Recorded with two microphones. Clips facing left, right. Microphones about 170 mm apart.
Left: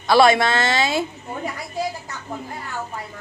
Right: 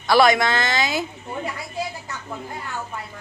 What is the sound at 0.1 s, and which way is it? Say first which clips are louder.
Speech: left 2 dB; 25° left (ahead or behind).